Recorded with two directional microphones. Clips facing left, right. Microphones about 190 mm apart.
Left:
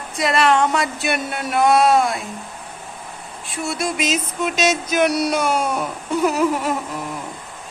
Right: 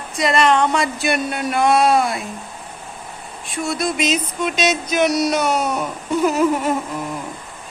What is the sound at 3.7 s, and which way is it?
Speech, 10° left (ahead or behind).